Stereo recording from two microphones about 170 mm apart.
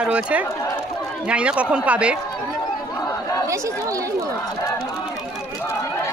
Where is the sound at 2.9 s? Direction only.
20° left (ahead or behind).